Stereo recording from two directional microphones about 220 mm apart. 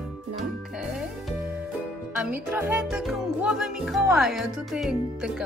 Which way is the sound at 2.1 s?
10° right (ahead or behind).